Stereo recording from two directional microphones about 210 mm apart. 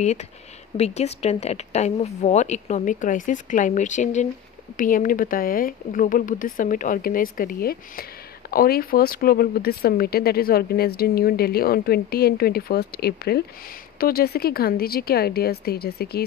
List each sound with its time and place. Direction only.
0.7 s speech: 30° left (ahead or behind); by 16.3 s 50° left (ahead or behind)